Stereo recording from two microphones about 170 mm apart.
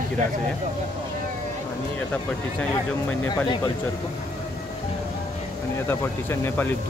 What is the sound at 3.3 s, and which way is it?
Speech, 25° left (ahead or behind).